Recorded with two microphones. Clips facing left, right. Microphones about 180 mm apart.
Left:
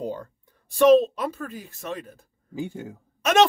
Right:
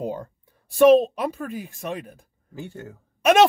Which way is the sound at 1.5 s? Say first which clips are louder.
Right 3 dB; 15° right (ahead or behind).